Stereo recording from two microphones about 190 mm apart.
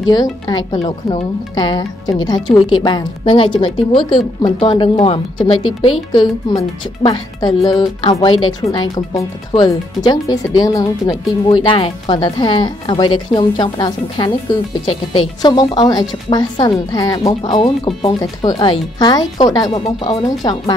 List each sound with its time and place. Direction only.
0.1 s speech: 20° left (ahead or behind)